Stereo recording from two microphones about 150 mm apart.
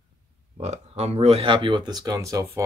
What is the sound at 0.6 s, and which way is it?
Speech, 50° right (ahead or behind).